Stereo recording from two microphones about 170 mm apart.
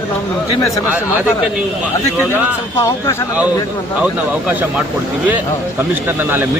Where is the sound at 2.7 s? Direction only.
15° left (ahead or behind).